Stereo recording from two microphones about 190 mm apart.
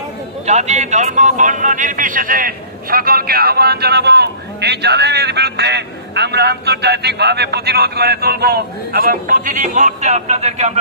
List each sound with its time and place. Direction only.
0.5 s a man's voice: 35° right (ahead or behind)